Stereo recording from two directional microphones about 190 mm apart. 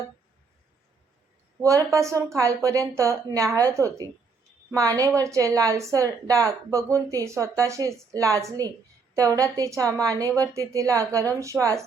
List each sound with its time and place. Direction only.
1.6 s a woman's voice: 15° right (ahead or behind)